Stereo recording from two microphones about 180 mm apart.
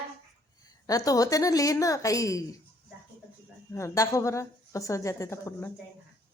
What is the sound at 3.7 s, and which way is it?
A woman's voice, 15° left (ahead or behind).